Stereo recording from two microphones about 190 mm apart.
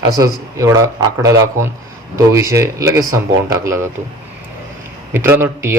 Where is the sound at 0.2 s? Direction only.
15° right (ahead or behind).